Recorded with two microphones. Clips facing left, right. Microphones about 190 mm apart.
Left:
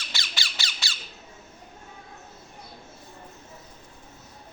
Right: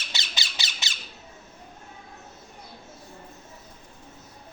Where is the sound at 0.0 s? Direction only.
20° right (ahead or behind).